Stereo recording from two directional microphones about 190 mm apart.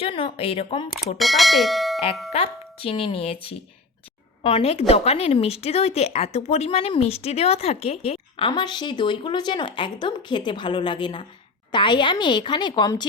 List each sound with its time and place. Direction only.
0.0 s a woman's voice: 30° left (ahead or behind)
1.2 s speech: centre (ahead or behind)
2.3 s a woman's voice: 30° left (ahead or behind)
4.4 s a woman's voice: 30° left (ahead or behind)